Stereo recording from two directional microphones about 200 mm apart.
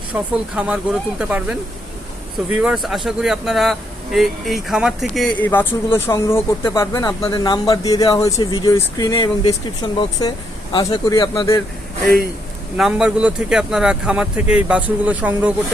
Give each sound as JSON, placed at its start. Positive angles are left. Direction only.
{"t": 0.1, "sound": "a man's voice", "side_deg": -5}
{"t": 2.6, "sound": "a man's voice", "side_deg": 0}
{"t": 12.7, "sound": "a man's voice", "side_deg": -5}